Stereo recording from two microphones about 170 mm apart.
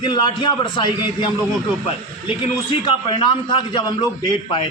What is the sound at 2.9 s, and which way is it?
A man's voice, 30° left (ahead or behind).